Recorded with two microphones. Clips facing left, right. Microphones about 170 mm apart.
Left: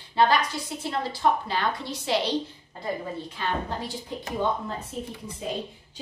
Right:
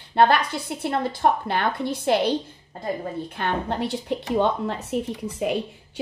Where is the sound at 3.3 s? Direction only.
60° right (ahead or behind).